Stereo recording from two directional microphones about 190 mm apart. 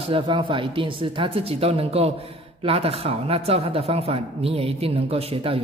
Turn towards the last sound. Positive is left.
turn(degrees=-30)  # may be behind; listen again after turning